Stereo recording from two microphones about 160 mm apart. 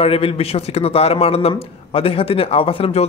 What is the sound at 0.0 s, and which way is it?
A man's voice, 35° left (ahead or behind).